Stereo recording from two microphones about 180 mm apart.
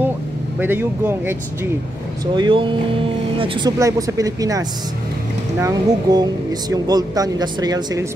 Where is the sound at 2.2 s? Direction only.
25° right (ahead or behind).